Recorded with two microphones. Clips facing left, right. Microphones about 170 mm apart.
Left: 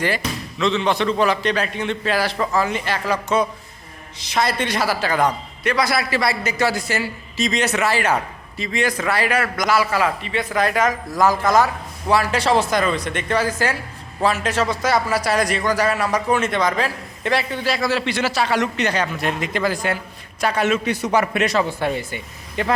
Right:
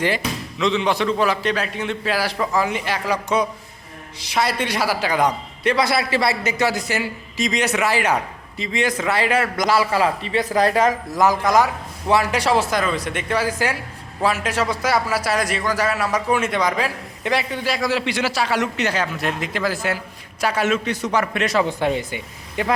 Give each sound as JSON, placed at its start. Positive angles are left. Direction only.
{"t": 0.2, "sound": "a man's voice", "side_deg": -15}
{"t": 5.6, "sound": "a man's voice", "side_deg": -25}
{"t": 11.2, "sound": "a man's voice", "side_deg": -15}
{"t": 20.8, "sound": "a man's voice", "side_deg": 10}
{"t": 21.5, "sound": "a man's voice", "side_deg": -15}